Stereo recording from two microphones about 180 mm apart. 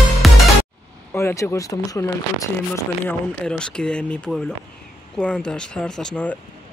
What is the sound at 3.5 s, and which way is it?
Speech, 5° left (ahead or behind).